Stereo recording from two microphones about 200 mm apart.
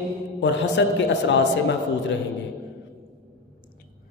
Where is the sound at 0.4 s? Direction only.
65° left (ahead or behind).